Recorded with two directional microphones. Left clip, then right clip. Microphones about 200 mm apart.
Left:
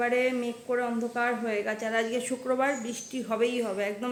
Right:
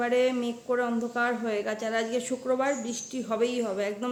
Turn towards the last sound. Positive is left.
turn(degrees=-10)  # may be behind; listen again after turning